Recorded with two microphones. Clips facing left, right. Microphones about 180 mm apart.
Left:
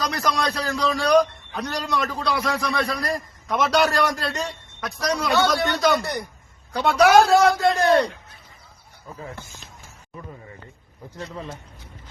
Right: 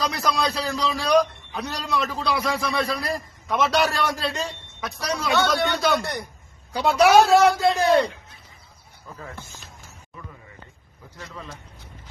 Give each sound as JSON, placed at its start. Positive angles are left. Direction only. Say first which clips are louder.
{"t": 0.0, "sound": "a man's voice", "louder": "even", "side_deg": 0}
{"t": 9.2, "sound": "speech", "louder": "left 2 dB", "side_deg": 15}